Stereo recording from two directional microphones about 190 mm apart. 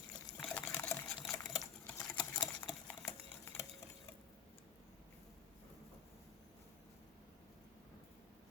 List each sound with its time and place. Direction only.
0.3 s liquid: 5° left (ahead or behind)
0.8 s sewing machine: 10° left (ahead or behind)
2.8 s a sound: 10° left (ahead or behind)